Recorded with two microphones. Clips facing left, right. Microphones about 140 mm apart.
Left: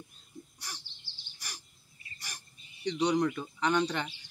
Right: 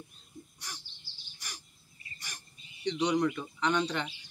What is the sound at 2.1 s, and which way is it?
Bird, 35° left (ahead or behind).